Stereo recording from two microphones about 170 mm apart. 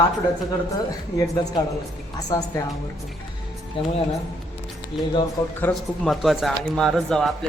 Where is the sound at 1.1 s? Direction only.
20° left (ahead or behind).